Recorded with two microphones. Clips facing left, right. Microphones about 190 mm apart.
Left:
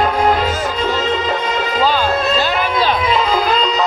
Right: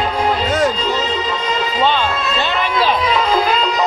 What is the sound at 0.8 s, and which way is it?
Music, 55° left (ahead or behind).